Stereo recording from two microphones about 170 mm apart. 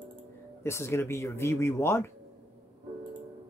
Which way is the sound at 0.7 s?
15° left (ahead or behind).